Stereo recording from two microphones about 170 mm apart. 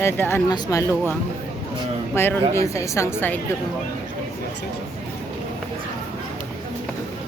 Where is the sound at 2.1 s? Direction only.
15° left (ahead or behind).